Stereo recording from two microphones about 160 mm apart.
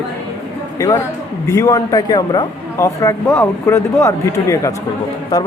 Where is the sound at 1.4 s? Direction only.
20° left (ahead or behind).